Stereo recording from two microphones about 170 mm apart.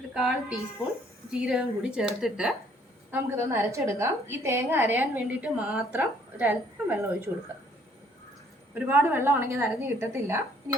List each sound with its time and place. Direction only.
0.1 s a woman's voice: 5° right (ahead or behind)
3.1 s a woman's voice: 15° right (ahead or behind)
8.9 s a woman's voice: 10° right (ahead or behind)